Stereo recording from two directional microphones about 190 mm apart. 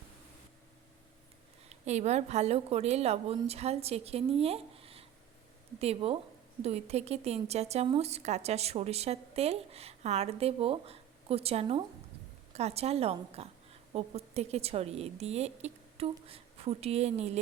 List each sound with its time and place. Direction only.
1.7 s a woman's voice: 35° right (ahead or behind)